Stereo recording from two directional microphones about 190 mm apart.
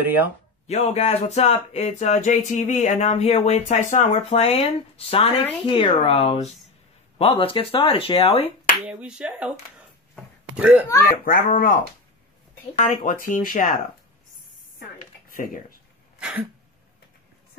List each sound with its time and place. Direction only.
0.0 s speech: 10° right (ahead or behind)
0.7 s speech: 35° left (ahead or behind)
8.7 s speech: 5° right (ahead or behind)
11.2 s speech: 45° left (ahead or behind)
15.3 s speech: 50° left (ahead or behind)
16.2 s throat clearing: 5° right (ahead or behind)